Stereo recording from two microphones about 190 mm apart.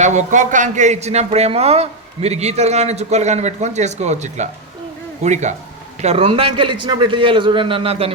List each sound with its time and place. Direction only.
0.0 s a man's voice: 40° right (ahead or behind)